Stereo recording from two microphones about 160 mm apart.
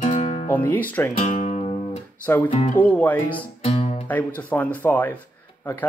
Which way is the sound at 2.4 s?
45° left (ahead or behind).